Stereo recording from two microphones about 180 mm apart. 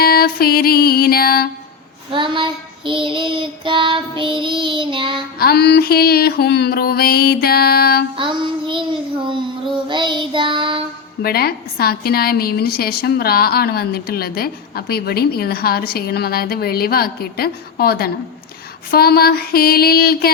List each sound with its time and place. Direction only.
0.0 s music: 55° left (ahead or behind)
2.1 s child singing: 25° right (ahead or behind)
5.4 s a woman's voice: 60° left (ahead or behind)
8.1 s child singing: 30° right (ahead or behind)
9.9 s child singing: 25° right (ahead or behind)
11.2 s a woman's voice: 60° left (ahead or behind)